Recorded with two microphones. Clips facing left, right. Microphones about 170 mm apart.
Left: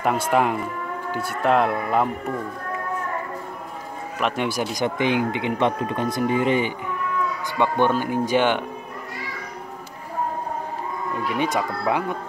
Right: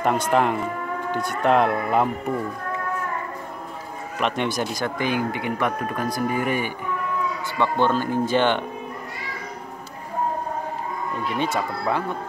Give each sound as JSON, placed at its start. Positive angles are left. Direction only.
{"t": 0.0, "sound": "speech", "side_deg": 5}
{"t": 4.2, "sound": "speech", "side_deg": 5}
{"t": 4.8, "sound": "speech", "side_deg": 20}
{"t": 11.2, "sound": "speech", "side_deg": 15}